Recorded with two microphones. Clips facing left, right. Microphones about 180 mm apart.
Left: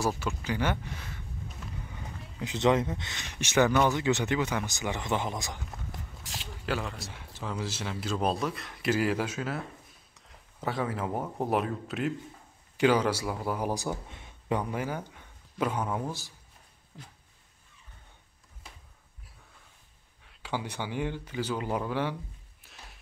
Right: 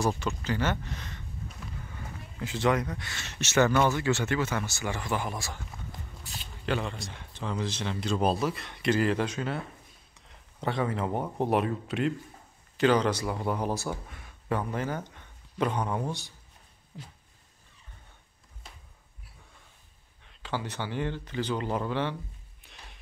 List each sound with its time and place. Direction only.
0.0 s speech: 5° left (ahead or behind)
2.3 s speech: 20° left (ahead or behind)
5.9 s walk: 90° left
6.6 s a man's voice: 5° left (ahead or behind)
20.2 s speech: 10° left (ahead or behind)
22.6 s music: centre (ahead or behind)